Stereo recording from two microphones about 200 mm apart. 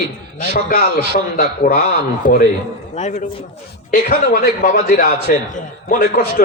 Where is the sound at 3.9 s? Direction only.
45° left (ahead or behind).